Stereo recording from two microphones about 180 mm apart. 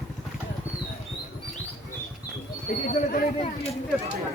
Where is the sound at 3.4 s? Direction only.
35° left (ahead or behind).